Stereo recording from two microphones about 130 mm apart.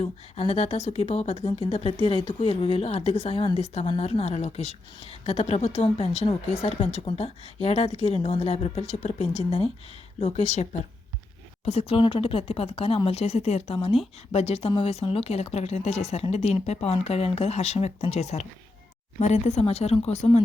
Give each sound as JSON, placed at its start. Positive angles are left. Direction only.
{"t": 0.0, "sound": "a woman's voice", "side_deg": 50}